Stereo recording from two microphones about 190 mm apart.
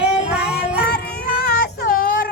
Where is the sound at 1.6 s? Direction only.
50° left (ahead or behind).